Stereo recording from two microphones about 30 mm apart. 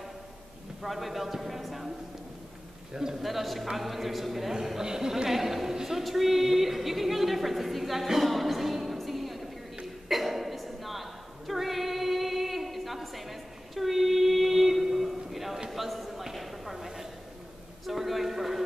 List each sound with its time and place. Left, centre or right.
0.8 s a man's voice: centre
2.9 s a man's voice: centre
3.2 s a man's voice: centre
4.6 s a woman's voice: centre
10.0 s a sound: centre